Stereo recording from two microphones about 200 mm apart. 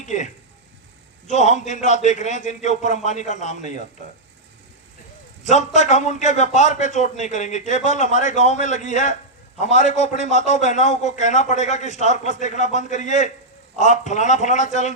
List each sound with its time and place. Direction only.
0.0 s speech: 35° left (ahead or behind)
1.3 s a man's voice: 35° left (ahead or behind)
5.4 s a man's voice: 35° left (ahead or behind)